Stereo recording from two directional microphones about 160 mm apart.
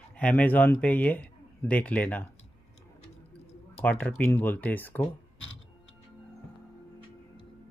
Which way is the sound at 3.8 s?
10° left (ahead or behind).